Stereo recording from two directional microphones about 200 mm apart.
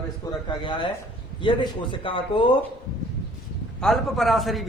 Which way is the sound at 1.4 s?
25° left (ahead or behind).